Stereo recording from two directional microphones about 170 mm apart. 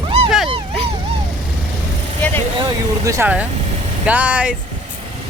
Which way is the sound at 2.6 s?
20° right (ahead or behind).